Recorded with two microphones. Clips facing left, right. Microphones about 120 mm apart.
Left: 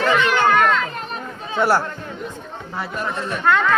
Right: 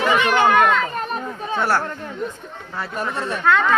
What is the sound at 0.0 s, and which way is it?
Speech, 15° right (ahead or behind).